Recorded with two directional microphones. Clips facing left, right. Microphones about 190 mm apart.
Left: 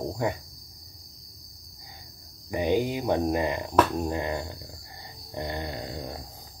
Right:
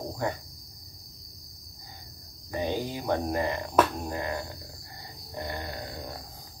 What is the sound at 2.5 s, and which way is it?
Speech, 15° left (ahead or behind).